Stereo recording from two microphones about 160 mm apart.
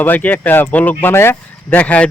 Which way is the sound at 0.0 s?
10° left (ahead or behind).